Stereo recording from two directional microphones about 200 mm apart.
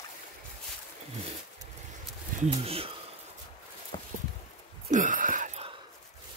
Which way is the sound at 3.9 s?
25° left (ahead or behind).